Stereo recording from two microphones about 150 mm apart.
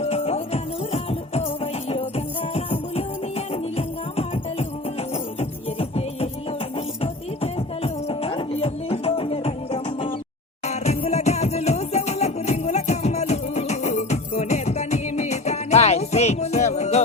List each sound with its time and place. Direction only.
0.0 s music: 45° left (ahead or behind)
7.0 s music: 40° left (ahead or behind)